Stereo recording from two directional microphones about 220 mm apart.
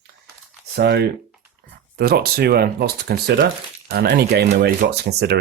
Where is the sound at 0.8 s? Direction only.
50° right (ahead or behind).